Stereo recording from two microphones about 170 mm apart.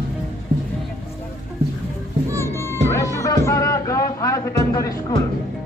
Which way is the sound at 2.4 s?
15° left (ahead or behind).